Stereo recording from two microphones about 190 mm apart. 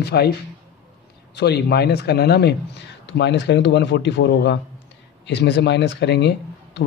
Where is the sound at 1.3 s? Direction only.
60° left (ahead or behind).